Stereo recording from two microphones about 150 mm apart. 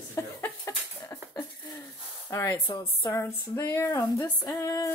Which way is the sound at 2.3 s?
20° left (ahead or behind).